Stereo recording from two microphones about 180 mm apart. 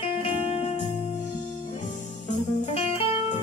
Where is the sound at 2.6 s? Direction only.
35° left (ahead or behind).